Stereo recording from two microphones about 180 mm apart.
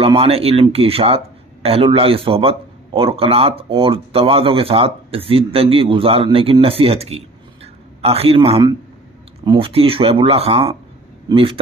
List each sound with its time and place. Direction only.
0.0 s speech: 30° right (ahead or behind)